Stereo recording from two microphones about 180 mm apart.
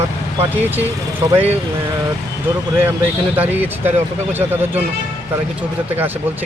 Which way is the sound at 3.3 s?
10° right (ahead or behind).